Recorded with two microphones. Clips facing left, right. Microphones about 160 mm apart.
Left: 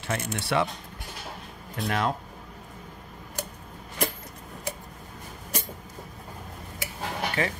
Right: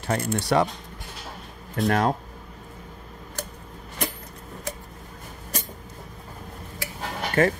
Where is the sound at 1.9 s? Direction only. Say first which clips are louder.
Right 5 dB; 40° right (ahead or behind).